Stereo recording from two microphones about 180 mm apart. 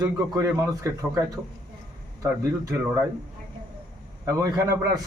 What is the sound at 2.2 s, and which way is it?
Speech, 15° right (ahead or behind).